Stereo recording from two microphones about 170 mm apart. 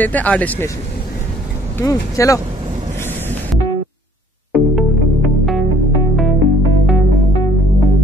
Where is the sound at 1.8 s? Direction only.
20° left (ahead or behind).